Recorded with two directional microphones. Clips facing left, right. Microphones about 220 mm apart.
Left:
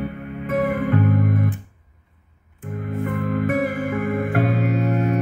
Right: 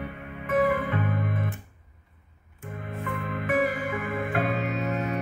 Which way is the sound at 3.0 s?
50° left (ahead or behind).